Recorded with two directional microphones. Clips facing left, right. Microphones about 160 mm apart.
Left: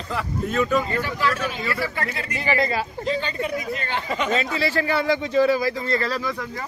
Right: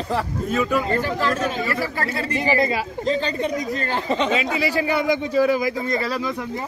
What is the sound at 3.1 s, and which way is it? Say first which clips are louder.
A man's voice: right 4 dB; 35° right (ahead or behind).